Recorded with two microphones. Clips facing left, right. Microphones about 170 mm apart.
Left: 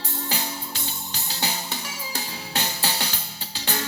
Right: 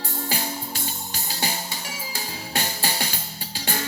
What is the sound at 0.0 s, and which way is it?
Music, 50° right (ahead or behind).